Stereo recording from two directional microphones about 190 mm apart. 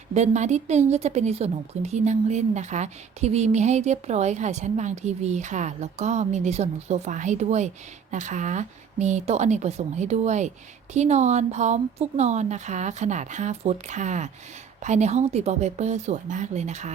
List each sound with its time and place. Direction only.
0.1 s a woman's voice: 35° right (ahead or behind)